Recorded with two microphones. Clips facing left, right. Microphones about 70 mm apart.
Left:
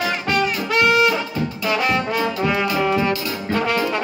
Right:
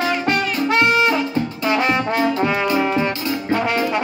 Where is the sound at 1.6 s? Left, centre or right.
Right.